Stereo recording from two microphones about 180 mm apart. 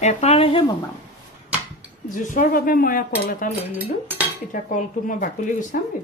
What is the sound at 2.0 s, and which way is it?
Speech, 45° left (ahead or behind).